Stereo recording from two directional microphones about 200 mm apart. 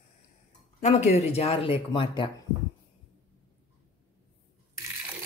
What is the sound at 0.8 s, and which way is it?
Speech, 35° left (ahead or behind).